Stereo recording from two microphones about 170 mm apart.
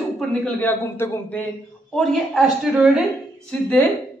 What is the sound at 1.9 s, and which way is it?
A woman's voice, centre (ahead or behind).